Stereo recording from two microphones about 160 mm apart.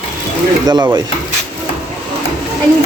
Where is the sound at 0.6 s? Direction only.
25° right (ahead or behind).